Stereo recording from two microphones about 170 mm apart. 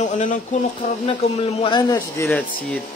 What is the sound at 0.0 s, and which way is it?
Speech, 45° left (ahead or behind).